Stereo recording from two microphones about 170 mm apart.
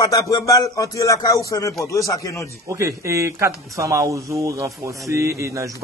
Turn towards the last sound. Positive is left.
turn(degrees=-20)  # may be behind; listen again after turning